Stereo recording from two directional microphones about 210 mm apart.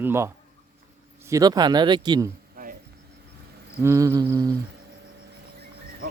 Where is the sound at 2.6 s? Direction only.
45° right (ahead or behind).